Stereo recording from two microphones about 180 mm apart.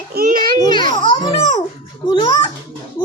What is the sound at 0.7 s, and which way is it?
A child's voice, 25° left (ahead or behind).